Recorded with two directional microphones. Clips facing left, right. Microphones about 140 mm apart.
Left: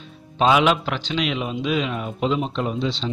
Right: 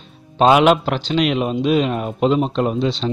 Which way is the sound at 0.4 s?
50° right (ahead or behind).